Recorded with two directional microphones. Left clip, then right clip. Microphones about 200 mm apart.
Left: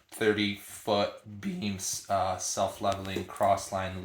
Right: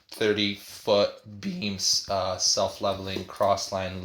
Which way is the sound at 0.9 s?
45° right (ahead or behind).